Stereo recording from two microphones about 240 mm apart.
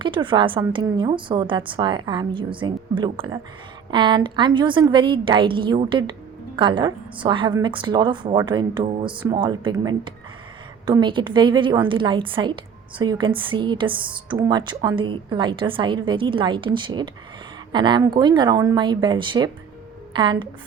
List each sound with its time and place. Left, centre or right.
0.0 s a woman's voice: centre